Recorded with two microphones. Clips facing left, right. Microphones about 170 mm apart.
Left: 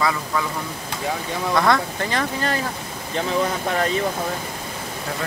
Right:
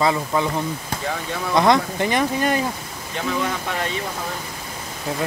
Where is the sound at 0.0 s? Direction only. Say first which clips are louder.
Right 3 dB; 25° right (ahead or behind).